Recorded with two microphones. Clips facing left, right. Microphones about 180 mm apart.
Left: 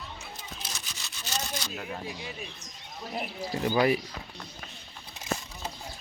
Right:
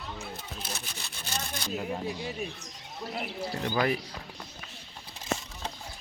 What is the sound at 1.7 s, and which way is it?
Speech, centre (ahead or behind).